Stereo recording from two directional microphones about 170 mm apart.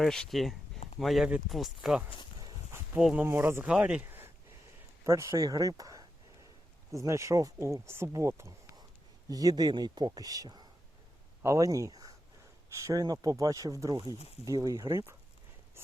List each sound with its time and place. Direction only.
0.0 s speech: centre (ahead or behind)
2.4 s a sound: 20° right (ahead or behind)
2.9 s speech: 5° right (ahead or behind)